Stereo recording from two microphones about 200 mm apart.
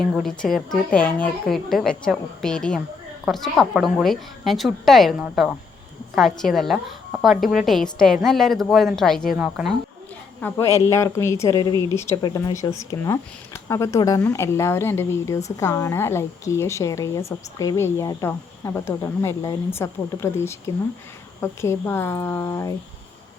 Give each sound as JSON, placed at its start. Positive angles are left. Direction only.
{"t": 0.0, "sound": "a woman's voice", "side_deg": 0}
{"t": 10.4, "sound": "a woman's voice", "side_deg": 15}